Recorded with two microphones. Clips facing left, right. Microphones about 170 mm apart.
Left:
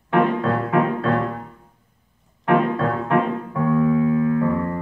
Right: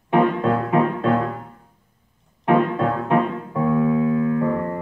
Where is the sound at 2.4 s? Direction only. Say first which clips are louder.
Right 1 dB; 20° right (ahead or behind).